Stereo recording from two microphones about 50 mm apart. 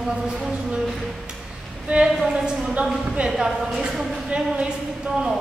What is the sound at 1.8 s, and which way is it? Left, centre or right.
Speech, right.